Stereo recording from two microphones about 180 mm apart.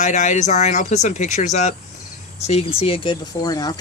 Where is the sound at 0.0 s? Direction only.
40° left (ahead or behind).